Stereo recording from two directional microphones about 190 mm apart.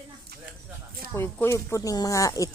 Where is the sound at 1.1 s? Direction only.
10° left (ahead or behind).